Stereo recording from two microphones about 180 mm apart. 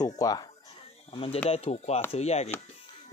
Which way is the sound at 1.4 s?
35° left (ahead or behind).